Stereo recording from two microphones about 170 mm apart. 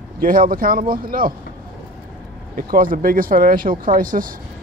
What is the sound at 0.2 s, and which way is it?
Speech, 55° right (ahead or behind).